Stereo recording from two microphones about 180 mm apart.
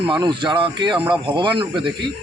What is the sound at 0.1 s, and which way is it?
Speech, 25° right (ahead or behind).